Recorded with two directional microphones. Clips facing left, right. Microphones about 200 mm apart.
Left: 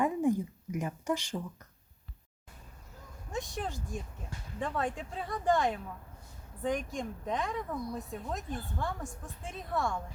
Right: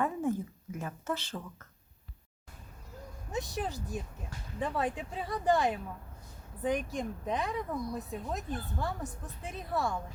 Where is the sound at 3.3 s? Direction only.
Centre (ahead or behind).